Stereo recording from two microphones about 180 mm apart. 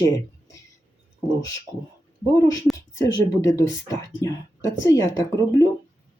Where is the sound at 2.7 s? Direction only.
15° left (ahead or behind).